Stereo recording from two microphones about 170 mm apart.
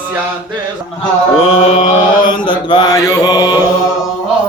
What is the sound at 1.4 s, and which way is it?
Mantra, 45° left (ahead or behind).